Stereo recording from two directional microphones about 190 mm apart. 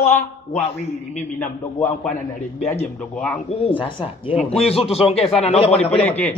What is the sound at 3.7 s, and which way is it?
Speech, 25° left (ahead or behind).